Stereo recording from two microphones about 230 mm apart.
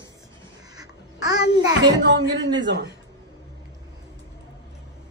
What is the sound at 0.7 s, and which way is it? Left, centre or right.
Babbling, centre.